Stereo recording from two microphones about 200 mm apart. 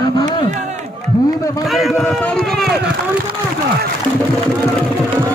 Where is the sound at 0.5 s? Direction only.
35° right (ahead or behind).